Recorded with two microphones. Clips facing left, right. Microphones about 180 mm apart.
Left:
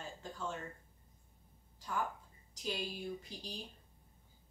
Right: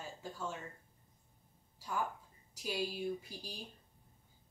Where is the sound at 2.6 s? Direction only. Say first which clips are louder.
Right 3 dB; 10° right (ahead or behind).